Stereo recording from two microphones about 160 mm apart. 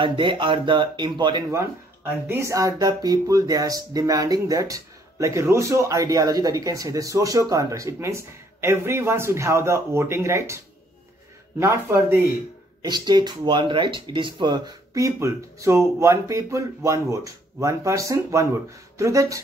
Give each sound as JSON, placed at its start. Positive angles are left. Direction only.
{"t": 0.0, "sound": "speech", "side_deg": -30}
{"t": 2.2, "sound": "speech", "side_deg": -15}
{"t": 11.6, "sound": "speech", "side_deg": -15}
{"t": 12.8, "sound": "speech", "side_deg": -25}